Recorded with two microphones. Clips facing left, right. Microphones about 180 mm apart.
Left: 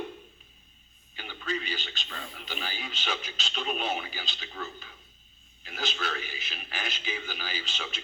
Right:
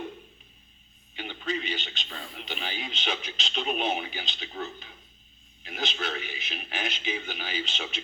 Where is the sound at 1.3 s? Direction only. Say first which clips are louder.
Right 2 dB; 20° right (ahead or behind).